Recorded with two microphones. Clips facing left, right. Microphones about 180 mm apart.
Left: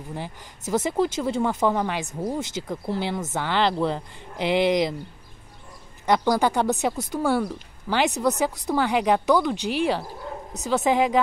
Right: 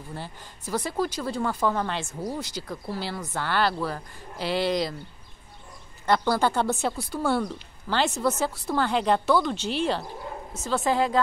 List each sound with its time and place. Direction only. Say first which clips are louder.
0.1 s speech: left 4 dB; 20° left (ahead or behind)
2.0 s speech: left 4 dB; 25° left (ahead or behind)
6.0 s speech: left 2 dB; 15° left (ahead or behind)